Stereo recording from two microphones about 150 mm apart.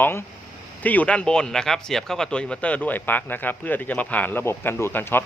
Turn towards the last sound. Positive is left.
turn(degrees=15)  # may be behind; listen again after turning